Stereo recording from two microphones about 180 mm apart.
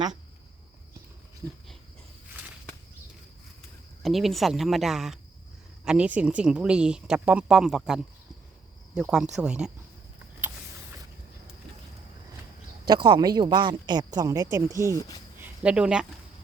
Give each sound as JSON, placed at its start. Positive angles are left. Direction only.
{"t": 4.0, "sound": "speech", "side_deg": 0}
{"t": 12.9, "sound": "speech", "side_deg": -25}
{"t": 14.9, "sound": "speech", "side_deg": 20}
{"t": 15.4, "sound": "speech", "side_deg": -5}